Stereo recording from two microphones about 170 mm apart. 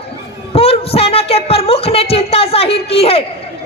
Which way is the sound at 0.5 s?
35° left (ahead or behind).